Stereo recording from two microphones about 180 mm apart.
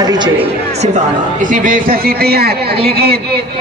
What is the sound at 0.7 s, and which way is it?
A man's voice, 40° right (ahead or behind).